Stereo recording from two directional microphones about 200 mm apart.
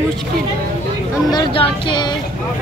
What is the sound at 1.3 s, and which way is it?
Speech, 25° left (ahead or behind).